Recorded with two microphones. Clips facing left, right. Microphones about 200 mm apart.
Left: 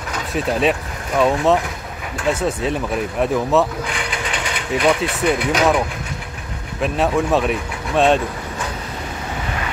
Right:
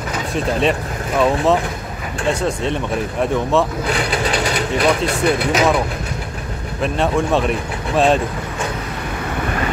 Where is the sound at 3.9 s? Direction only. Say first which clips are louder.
Right 6 dB; 35° right (ahead or behind).